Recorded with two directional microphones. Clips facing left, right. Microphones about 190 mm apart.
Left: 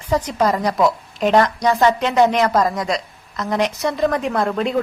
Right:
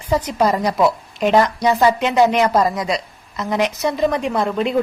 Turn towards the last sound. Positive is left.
turn(degrees=-5)  # may be behind; listen again after turning